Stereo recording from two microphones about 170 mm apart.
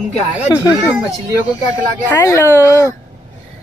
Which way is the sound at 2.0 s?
15° left (ahead or behind).